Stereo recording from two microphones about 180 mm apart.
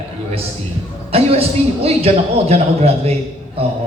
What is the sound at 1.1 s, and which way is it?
A man's voice, 35° right (ahead or behind).